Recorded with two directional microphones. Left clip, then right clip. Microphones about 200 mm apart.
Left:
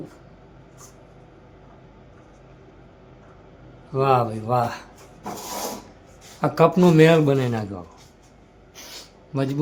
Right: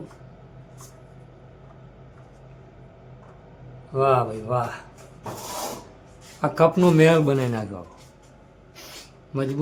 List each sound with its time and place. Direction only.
3.9 s a man's voice: 15° left (ahead or behind)
6.4 s a man's voice: 10° left (ahead or behind)
9.3 s a man's voice: 10° left (ahead or behind)